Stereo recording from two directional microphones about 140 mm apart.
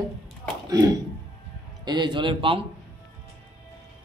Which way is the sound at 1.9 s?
30° right (ahead or behind).